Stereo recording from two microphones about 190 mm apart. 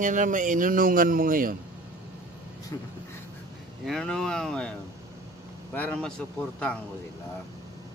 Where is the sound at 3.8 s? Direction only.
Centre (ahead or behind).